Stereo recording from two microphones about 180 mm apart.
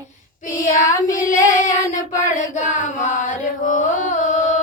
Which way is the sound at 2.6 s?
45° left (ahead or behind).